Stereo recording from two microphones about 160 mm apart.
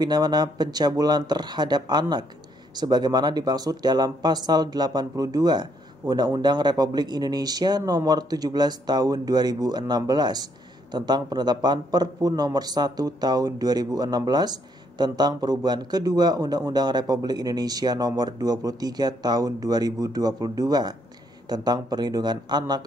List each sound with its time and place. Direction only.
0.0 s speech: 25° right (ahead or behind)